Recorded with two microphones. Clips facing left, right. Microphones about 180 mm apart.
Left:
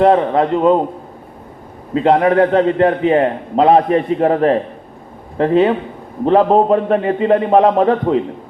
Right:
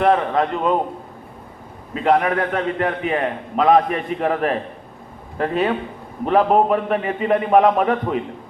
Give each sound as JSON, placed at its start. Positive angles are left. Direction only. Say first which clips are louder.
{"t": 0.0, "sound": "a man's voice", "louder": "left 5 dB", "side_deg": 25}
{"t": 1.9, "sound": "a man's voice", "louder": "left 5 dB", "side_deg": 30}